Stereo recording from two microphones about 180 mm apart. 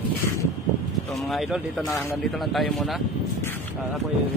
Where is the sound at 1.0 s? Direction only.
Centre (ahead or behind).